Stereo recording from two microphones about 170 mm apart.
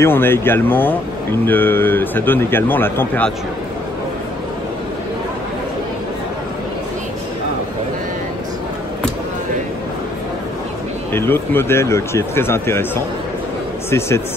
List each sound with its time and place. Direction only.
0.0 s a man's voice: 15° left (ahead or behind)
11.1 s a man's voice: 15° left (ahead or behind)